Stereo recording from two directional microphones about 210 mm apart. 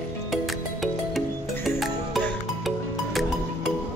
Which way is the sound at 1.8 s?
Centre (ahead or behind).